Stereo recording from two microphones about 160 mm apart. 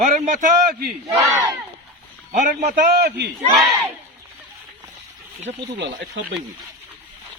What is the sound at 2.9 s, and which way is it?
Speech, 85° right.